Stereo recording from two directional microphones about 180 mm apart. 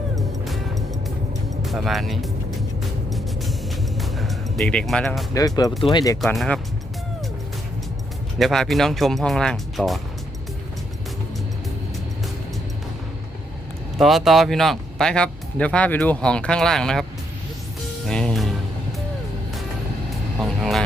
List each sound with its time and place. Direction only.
0.2 s music: centre (ahead or behind)
5.3 s speech: 20° left (ahead or behind)
6.2 s speech: centre (ahead or behind)
8.4 s speech: centre (ahead or behind)
14.0 s speech: centre (ahead or behind)
18.0 s music: 5° left (ahead or behind)
20.4 s vehicle: centre (ahead or behind)